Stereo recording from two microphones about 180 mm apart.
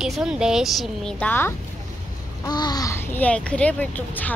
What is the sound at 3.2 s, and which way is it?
Speech, 5° left (ahead or behind).